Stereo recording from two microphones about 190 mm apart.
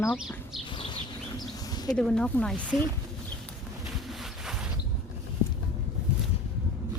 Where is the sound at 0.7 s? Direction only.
25° left (ahead or behind).